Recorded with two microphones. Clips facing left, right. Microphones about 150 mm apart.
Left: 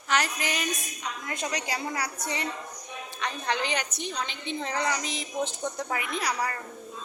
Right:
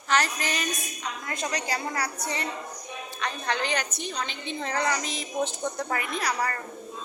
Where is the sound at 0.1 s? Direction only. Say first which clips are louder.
Right 2 dB; 10° left (ahead or behind).